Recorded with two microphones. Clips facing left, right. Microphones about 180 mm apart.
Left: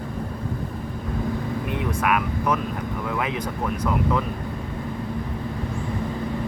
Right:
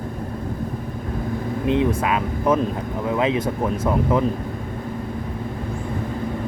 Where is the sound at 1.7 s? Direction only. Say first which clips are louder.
Right 5 dB; 25° right (ahead or behind).